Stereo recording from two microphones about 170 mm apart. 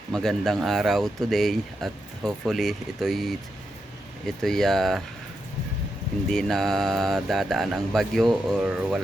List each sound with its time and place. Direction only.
0.1 s speech: centre (ahead or behind)
4.4 s speech: centre (ahead or behind)
6.3 s speech: centre (ahead or behind)